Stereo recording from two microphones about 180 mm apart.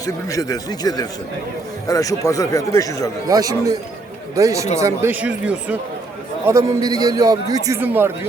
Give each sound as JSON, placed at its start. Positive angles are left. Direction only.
{"t": 0.0, "sound": "speech", "side_deg": 20}
{"t": 3.2, "sound": "a man's voice", "side_deg": -20}
{"t": 6.5, "sound": "a man's voice", "side_deg": -20}